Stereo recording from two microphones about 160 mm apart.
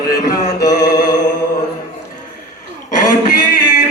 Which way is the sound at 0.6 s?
25° left (ahead or behind).